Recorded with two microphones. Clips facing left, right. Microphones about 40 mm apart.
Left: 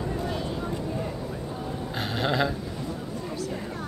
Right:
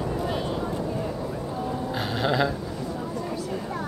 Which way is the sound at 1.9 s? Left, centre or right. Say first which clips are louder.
Right 1 dB; centre.